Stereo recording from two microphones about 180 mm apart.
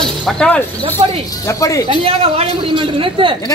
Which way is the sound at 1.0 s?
30° right (ahead or behind).